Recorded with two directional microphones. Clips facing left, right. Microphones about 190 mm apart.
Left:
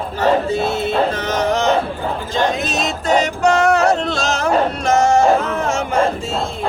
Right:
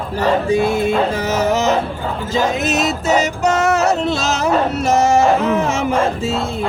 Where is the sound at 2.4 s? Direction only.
5° right (ahead or behind).